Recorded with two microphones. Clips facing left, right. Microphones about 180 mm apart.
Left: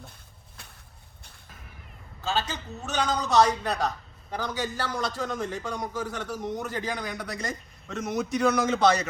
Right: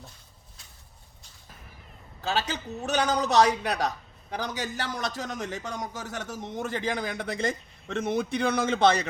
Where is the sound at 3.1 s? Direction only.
15° right (ahead or behind).